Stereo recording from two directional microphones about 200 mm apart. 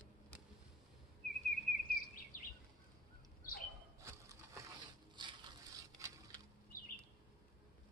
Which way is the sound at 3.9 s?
15° right (ahead or behind).